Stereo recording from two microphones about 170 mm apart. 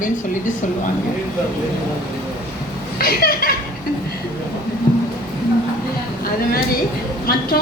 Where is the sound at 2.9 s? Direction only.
60° left (ahead or behind).